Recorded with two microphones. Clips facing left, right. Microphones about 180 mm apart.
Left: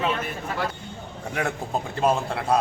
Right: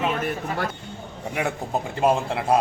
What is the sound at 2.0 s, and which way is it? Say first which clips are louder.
Speech: right 2 dB; 15° right (ahead or behind).